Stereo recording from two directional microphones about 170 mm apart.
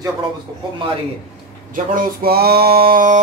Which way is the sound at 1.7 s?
55° right (ahead or behind).